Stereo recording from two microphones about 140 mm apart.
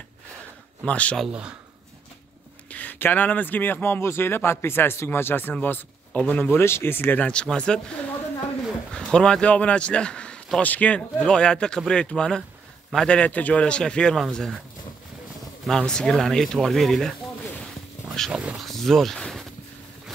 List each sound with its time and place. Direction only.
0.8 s a man's voice: 10° left (ahead or behind)
1.2 s speech: 5° right (ahead or behind)
2.7 s a man's voice: 10° left (ahead or behind)
8.9 s a man's voice: 5° left (ahead or behind)
15.6 s speech: 5° left (ahead or behind)
17.6 s a sound: 5° left (ahead or behind)
18.3 s speech: 10° right (ahead or behind)
18.7 s speech: centre (ahead or behind)